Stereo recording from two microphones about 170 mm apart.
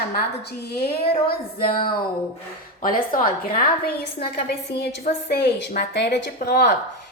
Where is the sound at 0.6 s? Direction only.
70° left (ahead or behind).